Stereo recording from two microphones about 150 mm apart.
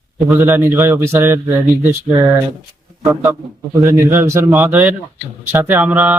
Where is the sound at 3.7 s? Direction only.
20° right (ahead or behind).